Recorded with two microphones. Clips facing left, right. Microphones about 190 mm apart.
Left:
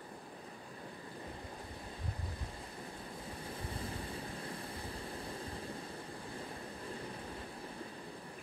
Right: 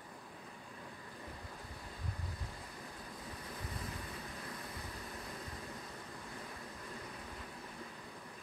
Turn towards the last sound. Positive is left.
turn(degrees=30)  # may be behind; listen again after turning